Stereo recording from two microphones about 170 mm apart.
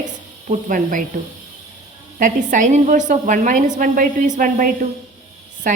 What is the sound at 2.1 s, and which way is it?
A woman's voice, 50° right (ahead or behind).